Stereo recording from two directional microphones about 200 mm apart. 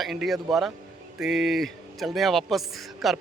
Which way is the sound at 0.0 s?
Centre (ahead or behind).